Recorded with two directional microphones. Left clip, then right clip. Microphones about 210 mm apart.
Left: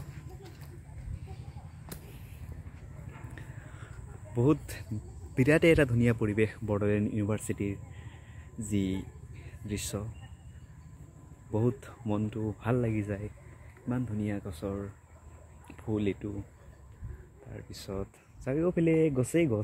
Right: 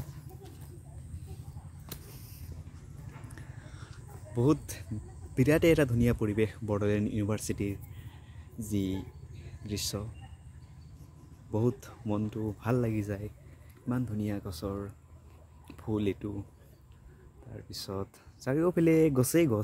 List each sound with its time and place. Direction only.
4.4 s speech: 5° right (ahead or behind)
11.5 s speech: 10° right (ahead or behind)
15.6 s a sound: 10° right (ahead or behind)
17.6 s speech: 15° right (ahead or behind)